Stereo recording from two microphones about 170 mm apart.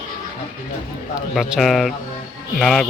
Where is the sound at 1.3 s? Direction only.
Centre (ahead or behind).